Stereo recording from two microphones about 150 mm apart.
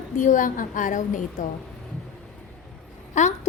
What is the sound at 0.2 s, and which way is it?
Speech, 60° left (ahead or behind).